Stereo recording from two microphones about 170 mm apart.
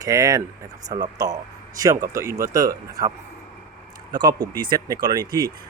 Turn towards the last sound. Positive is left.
turn(degrees=-25)  # may be behind; listen again after turning